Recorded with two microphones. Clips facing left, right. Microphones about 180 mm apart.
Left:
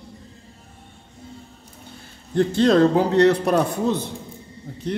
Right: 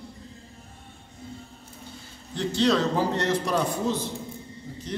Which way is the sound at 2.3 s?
50° left (ahead or behind).